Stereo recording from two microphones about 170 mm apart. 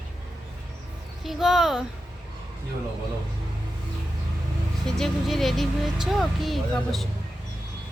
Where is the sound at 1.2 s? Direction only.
Centre (ahead or behind).